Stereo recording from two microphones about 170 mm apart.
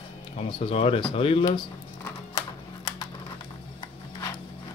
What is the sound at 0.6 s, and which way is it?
Speech, 35° left (ahead or behind).